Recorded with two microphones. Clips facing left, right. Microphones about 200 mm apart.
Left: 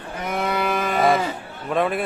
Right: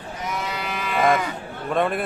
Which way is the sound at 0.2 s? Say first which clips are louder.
Left 6 dB; 55° left (ahead or behind).